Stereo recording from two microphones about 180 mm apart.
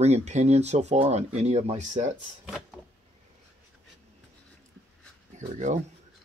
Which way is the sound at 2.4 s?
Centre (ahead or behind).